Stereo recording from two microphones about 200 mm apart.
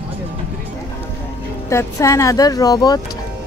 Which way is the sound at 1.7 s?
15° left (ahead or behind).